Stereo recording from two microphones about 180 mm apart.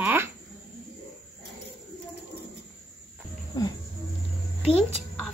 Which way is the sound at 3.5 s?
20° left (ahead or behind).